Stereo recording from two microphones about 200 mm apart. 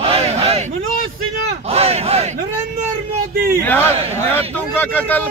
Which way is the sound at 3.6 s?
10° left (ahead or behind).